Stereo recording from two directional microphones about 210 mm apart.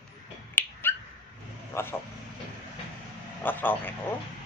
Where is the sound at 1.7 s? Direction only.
10° left (ahead or behind).